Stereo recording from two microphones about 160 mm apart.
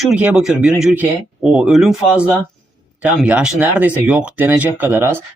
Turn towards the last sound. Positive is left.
turn(degrees=-15)  # may be behind; listen again after turning